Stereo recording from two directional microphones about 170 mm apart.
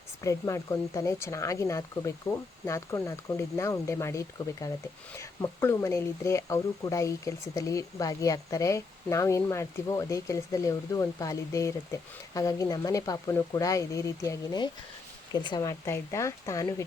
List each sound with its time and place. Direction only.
0.2 s speech: 20° left (ahead or behind)